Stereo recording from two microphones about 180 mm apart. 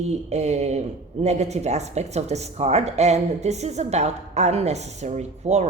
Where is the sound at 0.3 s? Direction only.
40° right (ahead or behind).